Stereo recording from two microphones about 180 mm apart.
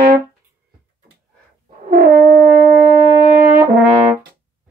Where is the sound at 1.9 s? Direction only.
55° right (ahead or behind).